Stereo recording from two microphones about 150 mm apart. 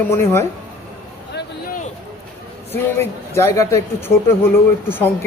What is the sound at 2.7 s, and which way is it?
A man's voice, 15° left (ahead or behind).